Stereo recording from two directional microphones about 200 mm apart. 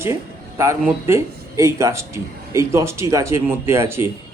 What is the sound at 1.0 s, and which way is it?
Speech, 15° right (ahead or behind).